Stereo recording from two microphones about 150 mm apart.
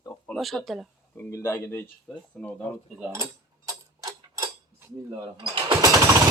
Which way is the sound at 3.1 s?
20° right (ahead or behind).